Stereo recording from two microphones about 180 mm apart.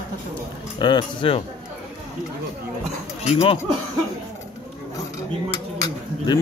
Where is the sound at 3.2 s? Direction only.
35° left (ahead or behind).